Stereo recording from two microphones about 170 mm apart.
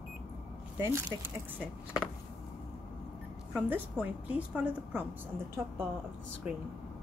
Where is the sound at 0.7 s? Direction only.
15° right (ahead or behind).